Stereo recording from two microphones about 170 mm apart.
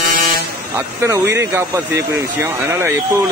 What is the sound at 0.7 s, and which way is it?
Speech, 15° right (ahead or behind).